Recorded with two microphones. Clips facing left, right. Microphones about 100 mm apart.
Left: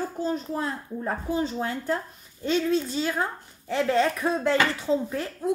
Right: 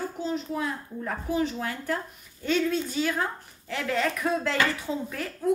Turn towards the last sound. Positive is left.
turn(degrees=25)  # may be behind; listen again after turning